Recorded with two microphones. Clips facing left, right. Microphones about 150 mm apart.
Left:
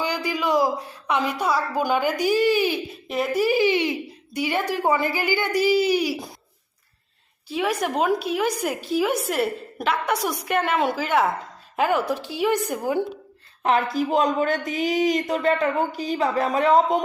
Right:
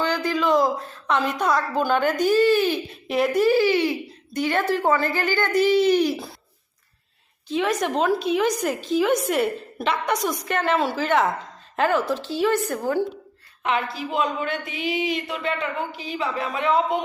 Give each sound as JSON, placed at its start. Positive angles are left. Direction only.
{"t": 0.0, "sound": "a woman's voice", "side_deg": 10}
{"t": 3.1, "sound": "a woman's voice", "side_deg": 0}
{"t": 7.4, "sound": "a woman's voice", "side_deg": 10}
{"t": 13.6, "sound": "speech", "side_deg": 40}